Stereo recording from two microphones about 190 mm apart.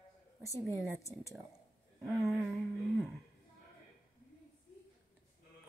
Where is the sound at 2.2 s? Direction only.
5° left (ahead or behind).